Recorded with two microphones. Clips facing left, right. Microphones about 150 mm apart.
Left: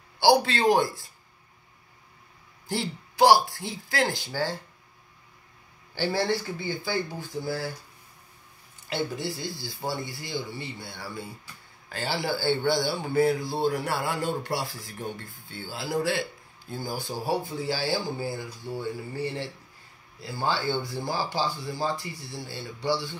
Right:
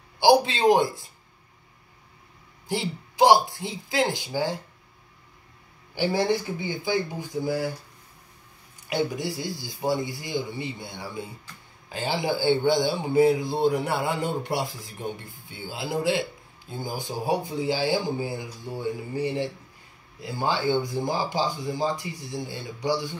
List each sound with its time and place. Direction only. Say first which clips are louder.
0.2 s speech: right 2 dB; 15° right (ahead or behind)
2.7 s speech: right 2 dB; 20° right (ahead or behind)
5.9 s speech: right 3 dB; 15° right (ahead or behind)
8.8 s speech: right 3 dB; 15° right (ahead or behind)